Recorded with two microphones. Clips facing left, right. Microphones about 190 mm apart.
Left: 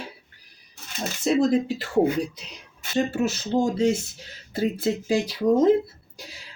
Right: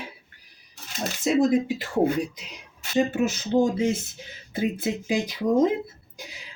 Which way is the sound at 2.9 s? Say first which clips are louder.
Right 1 dB; 15° right (ahead or behind).